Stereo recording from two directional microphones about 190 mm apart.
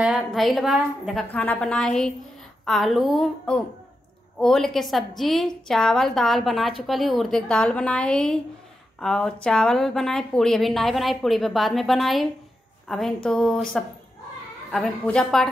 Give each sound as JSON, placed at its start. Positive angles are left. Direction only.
{"t": 0.0, "sound": "speech", "side_deg": 0}